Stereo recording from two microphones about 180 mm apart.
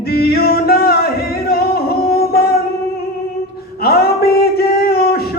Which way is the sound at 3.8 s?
60° left (ahead or behind).